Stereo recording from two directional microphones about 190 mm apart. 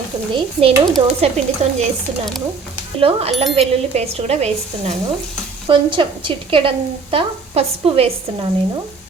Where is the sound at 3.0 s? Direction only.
30° right (ahead or behind).